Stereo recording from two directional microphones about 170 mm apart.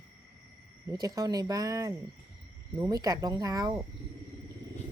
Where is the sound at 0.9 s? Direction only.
20° right (ahead or behind).